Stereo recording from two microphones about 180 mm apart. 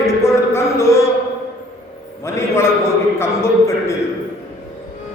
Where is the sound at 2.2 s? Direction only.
15° left (ahead or behind).